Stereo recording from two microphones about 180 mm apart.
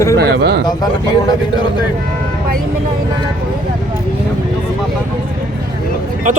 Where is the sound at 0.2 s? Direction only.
70° right (ahead or behind).